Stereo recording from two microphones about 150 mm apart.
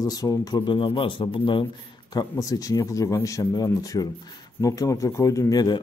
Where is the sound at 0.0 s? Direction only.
25° left (ahead or behind).